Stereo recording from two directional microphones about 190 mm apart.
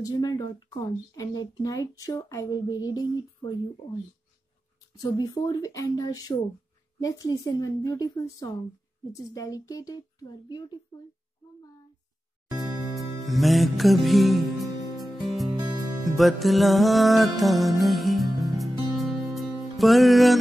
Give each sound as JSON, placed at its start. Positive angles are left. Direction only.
{"t": 0.0, "sound": "speech", "side_deg": 20}
{"t": 5.0, "sound": "a woman's voice", "side_deg": 20}
{"t": 12.8, "sound": "music", "side_deg": 0}